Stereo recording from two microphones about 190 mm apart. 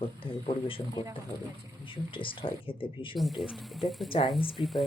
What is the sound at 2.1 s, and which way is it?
Speech, 25° left (ahead or behind).